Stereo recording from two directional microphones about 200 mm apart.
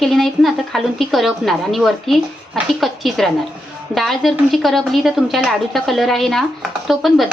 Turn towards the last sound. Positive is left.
turn(degrees=0)  # may be behind; listen again after turning